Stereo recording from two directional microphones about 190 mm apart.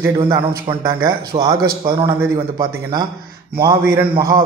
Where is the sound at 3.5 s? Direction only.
50° right (ahead or behind).